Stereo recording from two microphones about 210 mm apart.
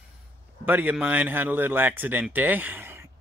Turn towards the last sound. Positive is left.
turn(degrees=-10)  # may be behind; listen again after turning